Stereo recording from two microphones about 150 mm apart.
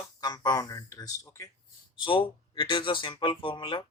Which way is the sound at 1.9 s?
35° left (ahead or behind).